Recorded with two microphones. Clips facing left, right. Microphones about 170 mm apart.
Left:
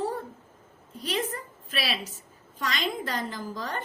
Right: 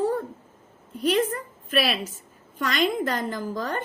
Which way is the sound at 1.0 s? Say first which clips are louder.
Right 8 dB; 55° right (ahead or behind).